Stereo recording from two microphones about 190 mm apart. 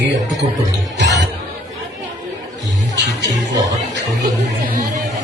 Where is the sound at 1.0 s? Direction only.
65° right (ahead or behind).